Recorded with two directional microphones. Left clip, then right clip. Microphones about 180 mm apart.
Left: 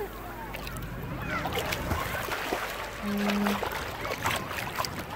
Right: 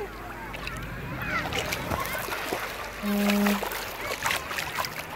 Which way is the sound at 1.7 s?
45° right (ahead or behind).